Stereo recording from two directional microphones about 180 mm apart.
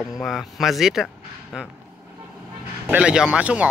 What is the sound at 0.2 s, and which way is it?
Speech, centre (ahead or behind).